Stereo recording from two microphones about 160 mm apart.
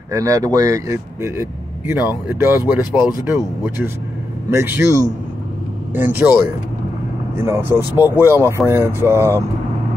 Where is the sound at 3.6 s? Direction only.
15° right (ahead or behind).